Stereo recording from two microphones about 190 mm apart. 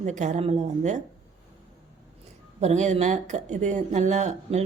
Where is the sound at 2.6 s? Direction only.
35° right (ahead or behind).